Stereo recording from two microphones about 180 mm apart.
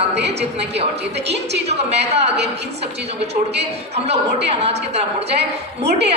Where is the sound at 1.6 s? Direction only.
35° right (ahead or behind).